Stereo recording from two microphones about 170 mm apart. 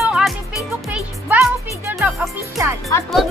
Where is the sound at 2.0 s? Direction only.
Centre (ahead or behind).